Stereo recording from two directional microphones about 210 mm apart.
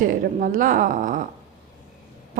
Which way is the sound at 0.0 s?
40° right (ahead or behind).